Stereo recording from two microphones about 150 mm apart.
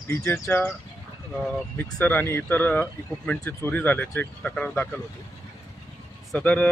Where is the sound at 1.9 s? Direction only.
15° left (ahead or behind).